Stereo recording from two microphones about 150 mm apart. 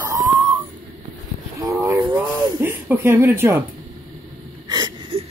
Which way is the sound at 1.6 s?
15° right (ahead or behind).